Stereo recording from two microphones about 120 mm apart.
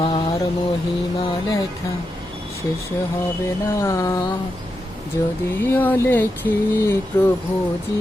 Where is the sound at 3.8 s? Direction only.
25° left (ahead or behind).